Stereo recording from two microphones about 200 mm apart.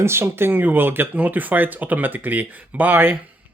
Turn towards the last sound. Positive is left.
turn(degrees=-10)  # may be behind; listen again after turning